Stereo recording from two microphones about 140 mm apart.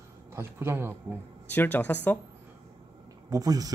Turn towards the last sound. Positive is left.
turn(degrees=-25)  # may be behind; listen again after turning